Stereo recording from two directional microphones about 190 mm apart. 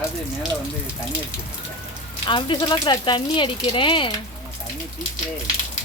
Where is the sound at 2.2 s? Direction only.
25° left (ahead or behind).